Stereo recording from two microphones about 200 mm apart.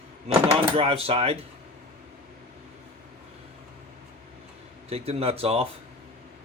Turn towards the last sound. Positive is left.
turn(degrees=-30)  # may be behind; listen again after turning